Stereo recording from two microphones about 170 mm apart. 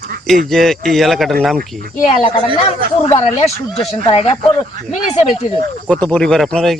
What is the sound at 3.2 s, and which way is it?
Speech, 40° left (ahead or behind).